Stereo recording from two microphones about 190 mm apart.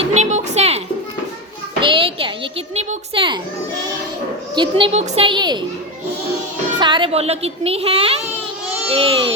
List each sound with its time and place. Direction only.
0.0 s a sound: 35° right (ahead or behind)
1.8 s a child's voice: 30° right (ahead or behind)
4.5 s a woman's voice: 25° right (ahead or behind)
6.7 s a woman's voice: 25° right (ahead or behind)